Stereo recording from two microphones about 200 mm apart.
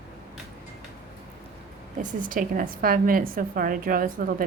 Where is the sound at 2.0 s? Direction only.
40° right (ahead or behind).